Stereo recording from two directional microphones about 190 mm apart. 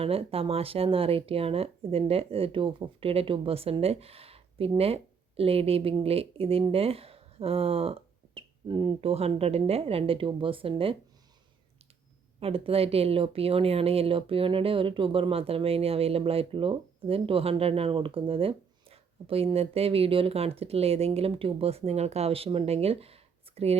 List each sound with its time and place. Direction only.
0.0 s speech: 30° right (ahead or behind)
12.4 s speech: 30° right (ahead or behind)